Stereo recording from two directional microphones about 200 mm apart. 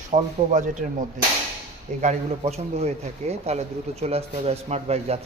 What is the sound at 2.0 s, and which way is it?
Speech, 35° right (ahead or behind).